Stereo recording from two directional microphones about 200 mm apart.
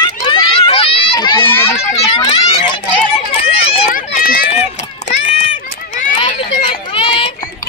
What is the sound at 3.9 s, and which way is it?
Run, 45° left (ahead or behind).